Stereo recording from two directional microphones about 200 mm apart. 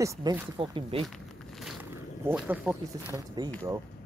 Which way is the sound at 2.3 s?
5° right (ahead or behind).